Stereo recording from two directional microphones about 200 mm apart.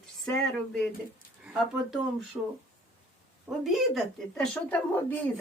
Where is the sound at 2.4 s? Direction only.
15° right (ahead or behind).